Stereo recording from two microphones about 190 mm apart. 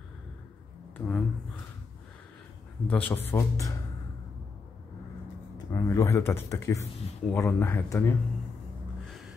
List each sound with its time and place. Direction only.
0.9 s a sound: 5° left (ahead or behind)
2.9 s speech: 10° left (ahead or behind)
5.7 s speech: 15° left (ahead or behind)
9.0 s vehicle: centre (ahead or behind)